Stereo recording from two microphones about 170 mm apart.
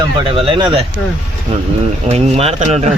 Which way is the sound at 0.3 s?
30° right (ahead or behind).